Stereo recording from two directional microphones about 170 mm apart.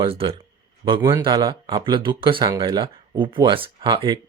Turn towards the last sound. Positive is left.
turn(degrees=-25)  # may be behind; listen again after turning